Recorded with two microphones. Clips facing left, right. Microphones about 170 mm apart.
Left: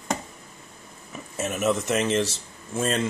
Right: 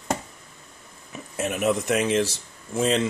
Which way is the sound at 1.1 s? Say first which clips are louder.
Right 2 dB; 10° right (ahead or behind).